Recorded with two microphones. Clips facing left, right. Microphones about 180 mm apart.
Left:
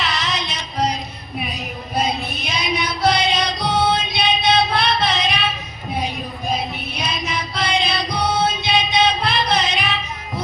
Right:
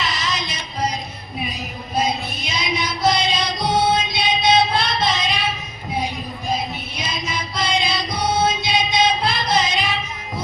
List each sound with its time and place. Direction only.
0.0 s music: 65° left (ahead or behind)
2.0 s music: 65° left (ahead or behind)
6.9 s music: 65° left (ahead or behind)